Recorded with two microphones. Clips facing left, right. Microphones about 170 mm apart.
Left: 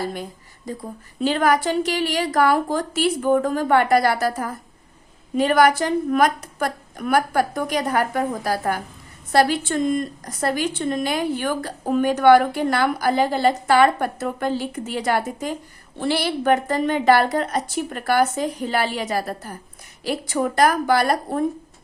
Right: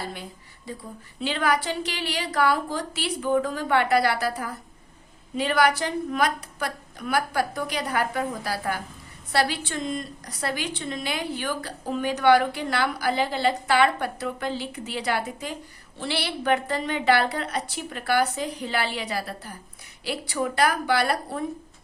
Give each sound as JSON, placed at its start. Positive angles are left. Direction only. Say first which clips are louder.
{"t": 0.1, "sound": "a woman's voice", "louder": "left 7 dB", "side_deg": 45}